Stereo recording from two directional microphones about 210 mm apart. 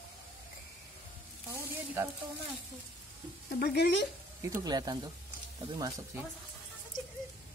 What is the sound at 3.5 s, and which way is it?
Speech, 50° left (ahead or behind).